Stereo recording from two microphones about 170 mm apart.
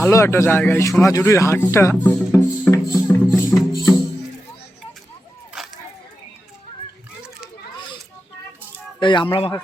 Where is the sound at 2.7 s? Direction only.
15° left (ahead or behind).